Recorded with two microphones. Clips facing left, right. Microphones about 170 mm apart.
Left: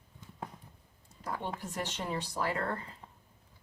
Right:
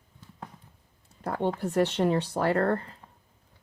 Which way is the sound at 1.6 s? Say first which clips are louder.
Right 13 dB; 65° right (ahead or behind).